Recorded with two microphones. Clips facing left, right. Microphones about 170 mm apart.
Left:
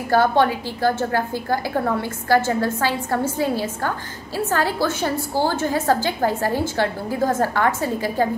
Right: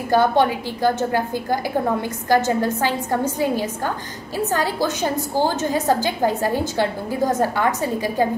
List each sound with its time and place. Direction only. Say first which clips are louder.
0.1 s a woman's voice: even; 15° right (ahead or behind)